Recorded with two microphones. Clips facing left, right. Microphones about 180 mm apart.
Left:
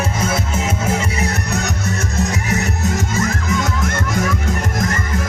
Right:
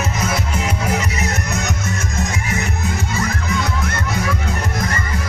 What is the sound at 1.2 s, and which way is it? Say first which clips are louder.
Music: left 2 dB; 35° left (ahead or behind).